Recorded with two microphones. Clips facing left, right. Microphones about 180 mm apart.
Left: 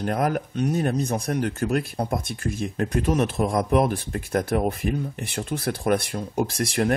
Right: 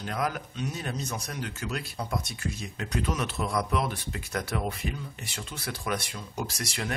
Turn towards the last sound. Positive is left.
turn(degrees=50)  # may be behind; listen again after turning